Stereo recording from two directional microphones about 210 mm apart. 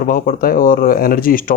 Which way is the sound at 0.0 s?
45° left (ahead or behind).